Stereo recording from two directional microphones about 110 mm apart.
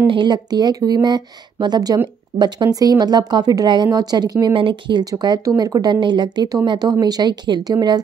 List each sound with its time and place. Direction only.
0.0 s speech: 50° right (ahead or behind)
5.0 s speech: 35° right (ahead or behind)